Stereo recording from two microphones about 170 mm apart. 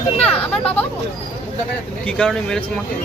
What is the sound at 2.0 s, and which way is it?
Speech, 5° left (ahead or behind).